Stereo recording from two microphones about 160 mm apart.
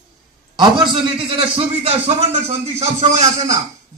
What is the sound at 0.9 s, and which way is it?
A man's voice, 35° right (ahead or behind).